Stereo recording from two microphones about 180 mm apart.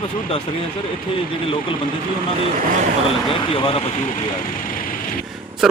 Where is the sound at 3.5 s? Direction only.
30° left (ahead or behind).